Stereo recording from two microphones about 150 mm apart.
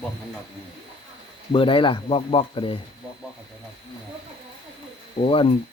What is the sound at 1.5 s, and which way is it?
Speech, 35° left (ahead or behind).